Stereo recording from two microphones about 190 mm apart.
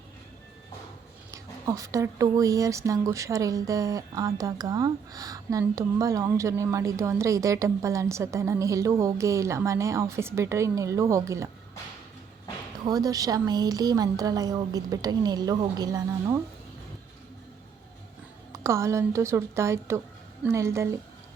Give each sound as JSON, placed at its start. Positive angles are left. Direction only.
{"t": 1.3, "sound": "speech", "side_deg": -15}
{"t": 12.8, "sound": "a woman's voice", "side_deg": -20}
{"t": 18.5, "sound": "speech", "side_deg": -15}